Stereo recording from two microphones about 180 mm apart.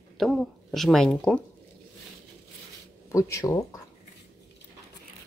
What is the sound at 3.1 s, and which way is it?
Speech, 15° left (ahead or behind).